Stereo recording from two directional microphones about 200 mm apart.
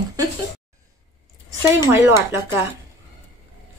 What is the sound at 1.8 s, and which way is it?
Speech, 15° right (ahead or behind).